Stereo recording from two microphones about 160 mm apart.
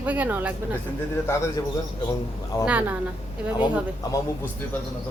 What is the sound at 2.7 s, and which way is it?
Speech, 10° right (ahead or behind).